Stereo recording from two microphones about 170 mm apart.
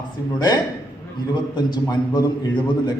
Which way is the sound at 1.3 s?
25° left (ahead or behind).